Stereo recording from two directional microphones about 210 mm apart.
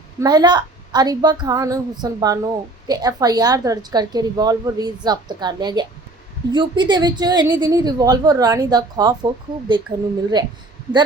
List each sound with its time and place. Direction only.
0.2 s a woman's voice: 20° right (ahead or behind)